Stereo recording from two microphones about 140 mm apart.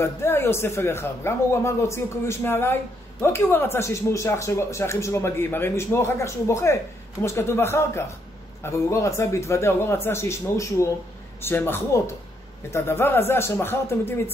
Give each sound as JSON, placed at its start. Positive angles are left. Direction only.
{"t": 0.0, "sound": "a man's voice", "side_deg": 15}